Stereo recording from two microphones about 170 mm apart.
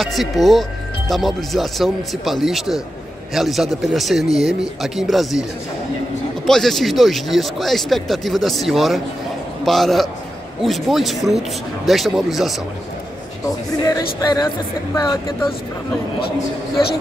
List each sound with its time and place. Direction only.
0.0 s speech: centre (ahead or behind)
6.4 s speech: centre (ahead or behind)
14.2 s speech: 25° left (ahead or behind)